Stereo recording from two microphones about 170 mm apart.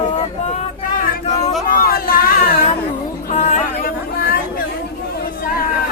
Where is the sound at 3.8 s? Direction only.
60° left (ahead or behind).